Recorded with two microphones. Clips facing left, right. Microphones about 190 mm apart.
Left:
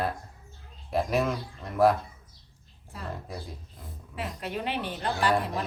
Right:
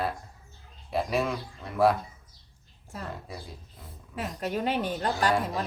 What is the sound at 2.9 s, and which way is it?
Speech, 45° right (ahead or behind).